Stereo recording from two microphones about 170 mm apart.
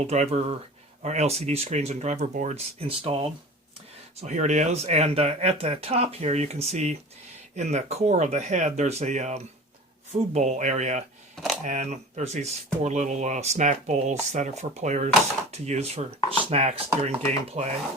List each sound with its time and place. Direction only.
0.0 s speech: 40° right (ahead or behind)
11.3 s a sound: centre (ahead or behind)
11.6 s speech: 45° right (ahead or behind)